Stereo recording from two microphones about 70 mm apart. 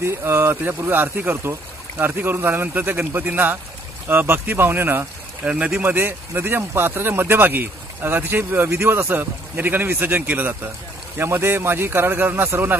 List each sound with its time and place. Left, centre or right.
0.0 s speech: right
5.4 s speech: centre
5.8 s speech: right